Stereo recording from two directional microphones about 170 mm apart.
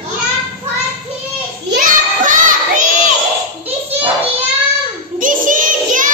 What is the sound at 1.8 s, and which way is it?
Child singing, 50° right (ahead or behind).